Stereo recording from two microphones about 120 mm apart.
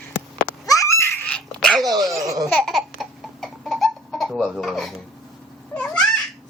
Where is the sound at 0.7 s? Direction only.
30° left (ahead or behind).